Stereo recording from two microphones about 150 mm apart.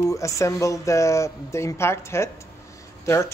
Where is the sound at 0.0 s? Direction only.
20° left (ahead or behind).